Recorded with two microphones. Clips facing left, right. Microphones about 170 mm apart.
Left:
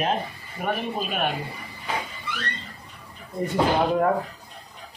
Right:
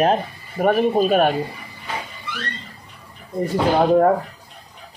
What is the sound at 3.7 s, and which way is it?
Speech, 40° right (ahead or behind).